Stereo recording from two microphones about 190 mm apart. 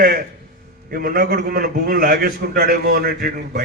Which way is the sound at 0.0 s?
50° right (ahead or behind).